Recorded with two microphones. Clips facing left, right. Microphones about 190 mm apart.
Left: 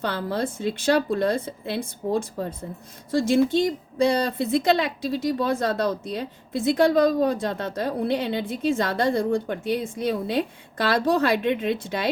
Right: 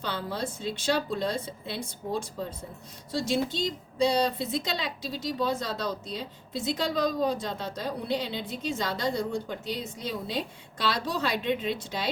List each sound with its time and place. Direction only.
0.0 s speech: 55° left (ahead or behind)